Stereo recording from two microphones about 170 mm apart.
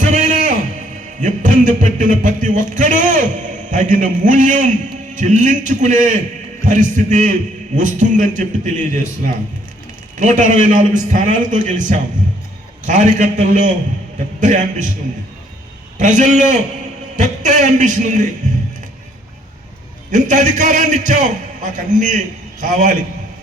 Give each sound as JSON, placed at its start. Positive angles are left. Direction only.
{"t": 0.0, "sound": "a sound", "side_deg": -45}
{"t": 1.2, "sound": "a man's voice", "side_deg": -45}
{"t": 16.0, "sound": "a man's voice", "side_deg": -45}
{"t": 20.1, "sound": "a man's voice", "side_deg": -45}